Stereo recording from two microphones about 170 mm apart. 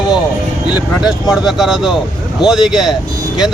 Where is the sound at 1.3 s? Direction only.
Centre (ahead or behind).